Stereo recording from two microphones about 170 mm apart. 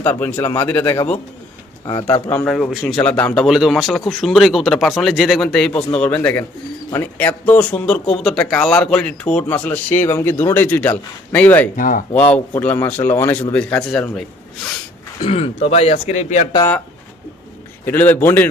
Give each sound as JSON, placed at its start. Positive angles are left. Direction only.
{"t": 0.0, "sound": "speech", "side_deg": 10}
{"t": 1.8, "sound": "speech", "side_deg": 25}
{"t": 2.5, "sound": "speech", "side_deg": 0}
{"t": 11.8, "sound": "speech", "side_deg": 55}
{"t": 12.3, "sound": "speech", "side_deg": 10}
{"t": 15.2, "sound": "speech", "side_deg": 35}
{"t": 17.8, "sound": "speech", "side_deg": 10}